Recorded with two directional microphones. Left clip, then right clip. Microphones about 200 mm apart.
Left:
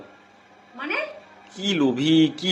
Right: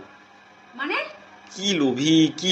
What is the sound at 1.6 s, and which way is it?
Speech, 20° left (ahead or behind).